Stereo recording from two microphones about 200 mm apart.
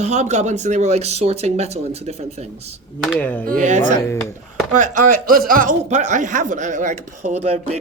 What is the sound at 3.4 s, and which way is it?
Speech, 40° right (ahead or behind).